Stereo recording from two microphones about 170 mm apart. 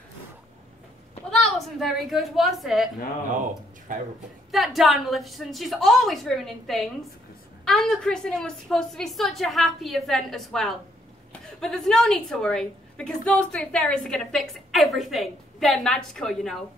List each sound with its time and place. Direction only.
1.3 s a woman's voice: centre (ahead or behind)
3.9 s speech: 50° right (ahead or behind)
4.5 s a woman's voice: centre (ahead or behind)